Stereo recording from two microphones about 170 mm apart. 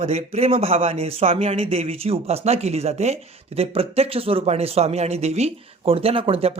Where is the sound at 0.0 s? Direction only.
40° right (ahead or behind).